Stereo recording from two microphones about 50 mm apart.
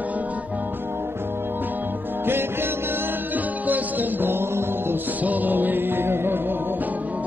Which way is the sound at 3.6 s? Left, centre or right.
Right.